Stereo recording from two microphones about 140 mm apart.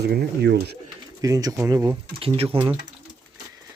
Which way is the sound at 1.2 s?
25° right (ahead or behind).